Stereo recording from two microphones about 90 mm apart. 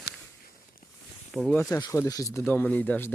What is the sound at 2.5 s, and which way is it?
Speech, 20° left (ahead or behind).